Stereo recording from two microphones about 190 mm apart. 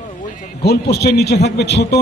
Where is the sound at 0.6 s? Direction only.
60° left (ahead or behind).